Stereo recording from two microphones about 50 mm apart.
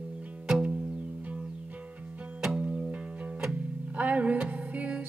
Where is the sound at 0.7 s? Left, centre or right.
Right.